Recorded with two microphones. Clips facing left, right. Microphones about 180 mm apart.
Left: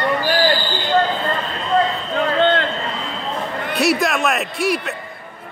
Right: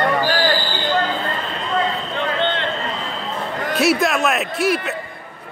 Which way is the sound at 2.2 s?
40° left (ahead or behind).